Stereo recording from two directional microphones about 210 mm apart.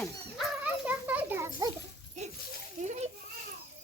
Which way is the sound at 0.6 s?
5° right (ahead or behind).